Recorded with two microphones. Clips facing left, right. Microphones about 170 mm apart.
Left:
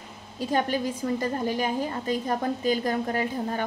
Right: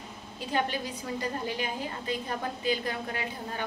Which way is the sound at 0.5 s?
45° left (ahead or behind).